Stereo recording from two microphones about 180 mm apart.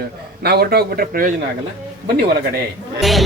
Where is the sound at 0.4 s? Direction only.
60° right (ahead or behind).